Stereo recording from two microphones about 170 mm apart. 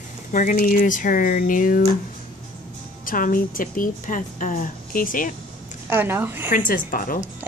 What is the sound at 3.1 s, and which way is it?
A woman's voice, 55° left (ahead or behind).